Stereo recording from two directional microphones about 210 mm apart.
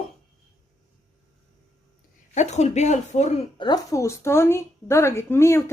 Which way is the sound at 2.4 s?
30° left (ahead or behind).